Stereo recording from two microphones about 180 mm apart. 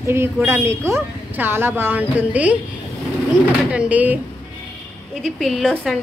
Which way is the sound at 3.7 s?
5° right (ahead or behind).